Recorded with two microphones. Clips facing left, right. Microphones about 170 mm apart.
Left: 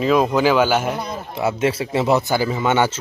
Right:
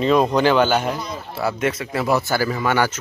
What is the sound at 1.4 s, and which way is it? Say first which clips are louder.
Speech: left 3 dB; 25° left (ahead or behind).